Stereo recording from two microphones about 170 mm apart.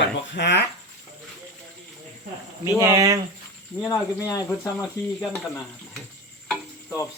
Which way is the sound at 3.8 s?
15° left (ahead or behind).